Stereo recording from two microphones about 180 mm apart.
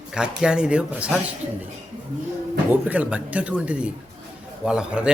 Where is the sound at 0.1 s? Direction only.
5° right (ahead or behind).